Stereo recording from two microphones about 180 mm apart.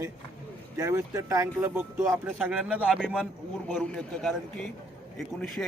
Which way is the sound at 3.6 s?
5° left (ahead or behind).